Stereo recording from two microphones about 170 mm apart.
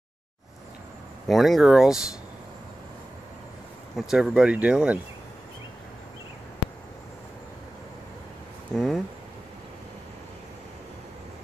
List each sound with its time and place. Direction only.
1.2 s speech: centre (ahead or behind)
4.1 s speech: 5° right (ahead or behind)
8.7 s speech: centre (ahead or behind)